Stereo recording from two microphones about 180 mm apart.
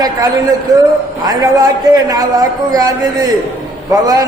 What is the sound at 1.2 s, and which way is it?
A man's voice, 20° right (ahead or behind).